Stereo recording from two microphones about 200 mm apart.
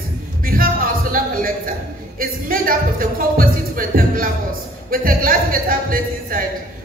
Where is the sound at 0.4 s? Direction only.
45° right (ahead or behind).